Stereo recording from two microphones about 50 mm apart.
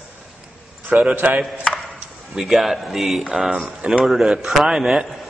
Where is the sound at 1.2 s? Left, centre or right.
Right.